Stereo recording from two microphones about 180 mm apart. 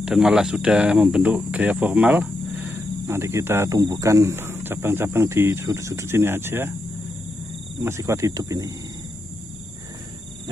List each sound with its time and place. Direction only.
0.0 s speech: 5° right (ahead or behind)
7.8 s speech: 15° right (ahead or behind)